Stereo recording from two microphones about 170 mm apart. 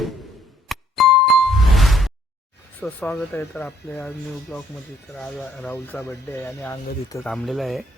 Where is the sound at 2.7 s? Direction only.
10° left (ahead or behind).